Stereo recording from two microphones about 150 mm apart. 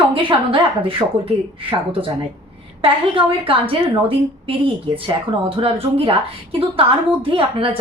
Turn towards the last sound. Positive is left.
turn(degrees=-35)  # may be behind; listen again after turning